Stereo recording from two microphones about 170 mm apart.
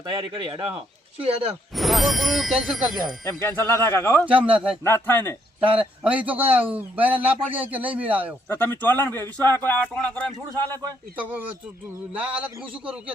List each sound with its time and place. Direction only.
0.0 s speech: 25° right (ahead or behind)
1.7 s speech: centre (ahead or behind)
3.2 s a man's voice: 15° left (ahead or behind)
4.4 s speech: 5° right (ahead or behind)
4.8 s a man's voice: 15° left (ahead or behind)
5.5 s speech: 35° right (ahead or behind)
6.0 s speech: 10° right (ahead or behind)
8.4 s a man's voice: 10° left (ahead or behind)